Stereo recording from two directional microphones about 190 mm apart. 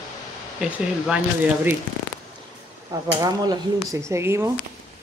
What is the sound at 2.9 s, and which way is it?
Speech, 20° right (ahead or behind).